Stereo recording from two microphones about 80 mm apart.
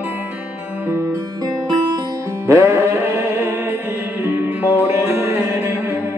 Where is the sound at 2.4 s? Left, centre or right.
Right.